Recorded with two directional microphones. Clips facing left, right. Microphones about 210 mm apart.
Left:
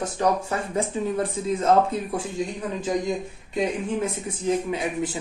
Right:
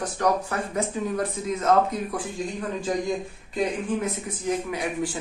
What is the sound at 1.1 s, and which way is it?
Speech, 30° left (ahead or behind).